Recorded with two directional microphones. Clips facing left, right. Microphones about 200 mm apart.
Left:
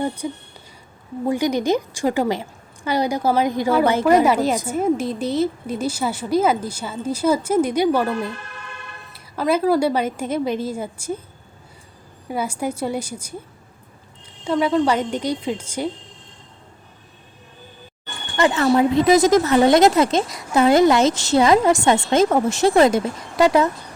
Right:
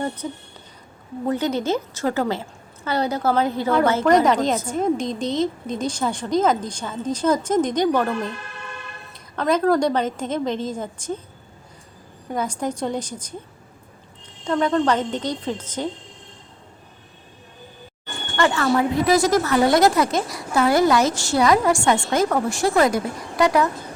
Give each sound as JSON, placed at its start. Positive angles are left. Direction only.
{"t": 0.2, "sound": "a woman's voice", "side_deg": 10}
{"t": 12.3, "sound": "a woman's voice", "side_deg": 10}
{"t": 14.4, "sound": "a woman's voice", "side_deg": 5}
{"t": 18.3, "sound": "speech", "side_deg": 20}